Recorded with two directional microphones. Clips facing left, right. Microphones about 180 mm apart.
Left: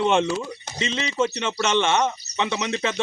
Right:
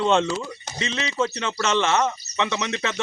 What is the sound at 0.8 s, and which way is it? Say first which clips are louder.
Speech: left 1 dB; 30° left (ahead or behind).